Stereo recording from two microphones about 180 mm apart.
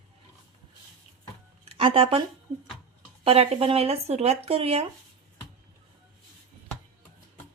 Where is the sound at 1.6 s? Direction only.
30° right (ahead or behind).